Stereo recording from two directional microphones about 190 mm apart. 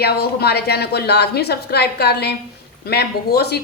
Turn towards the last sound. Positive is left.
turn(degrees=55)  # may be behind; listen again after turning